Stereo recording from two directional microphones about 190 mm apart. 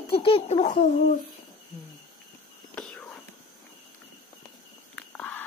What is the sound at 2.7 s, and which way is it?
Whispering, 5° left (ahead or behind).